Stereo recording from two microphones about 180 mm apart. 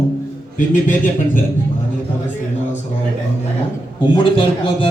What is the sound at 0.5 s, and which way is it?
Speech, 50° left (ahead or behind).